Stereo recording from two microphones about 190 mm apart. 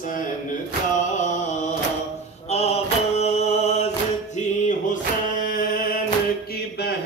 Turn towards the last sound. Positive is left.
turn(degrees=50)  # may be behind; listen again after turning